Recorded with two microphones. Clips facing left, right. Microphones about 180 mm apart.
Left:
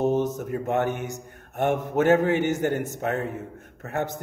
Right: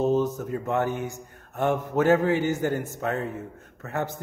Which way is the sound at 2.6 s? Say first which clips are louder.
Left 1 dB; 65° left (ahead or behind).